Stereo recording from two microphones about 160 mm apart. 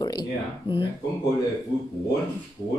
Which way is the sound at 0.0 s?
25° left (ahead or behind).